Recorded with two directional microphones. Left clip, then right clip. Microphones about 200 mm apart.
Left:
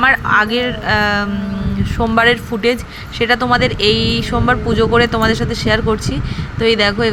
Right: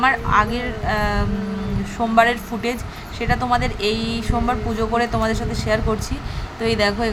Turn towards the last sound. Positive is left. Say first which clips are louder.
# left 6 dB
turn(degrees=10)  # may be behind; listen again after turning